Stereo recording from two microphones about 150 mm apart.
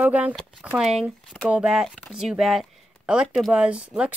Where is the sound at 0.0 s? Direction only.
10° right (ahead or behind).